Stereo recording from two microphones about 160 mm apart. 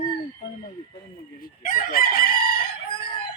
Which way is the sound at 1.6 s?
60° left (ahead or behind).